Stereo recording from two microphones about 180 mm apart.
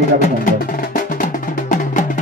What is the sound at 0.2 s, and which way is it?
Music, 50° left (ahead or behind).